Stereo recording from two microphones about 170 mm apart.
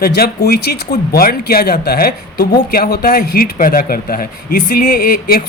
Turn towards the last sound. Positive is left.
turn(degrees=60)  # may be behind; listen again after turning